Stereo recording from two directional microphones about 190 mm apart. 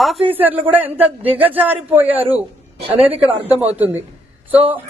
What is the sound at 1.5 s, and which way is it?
Speech, 10° right (ahead or behind).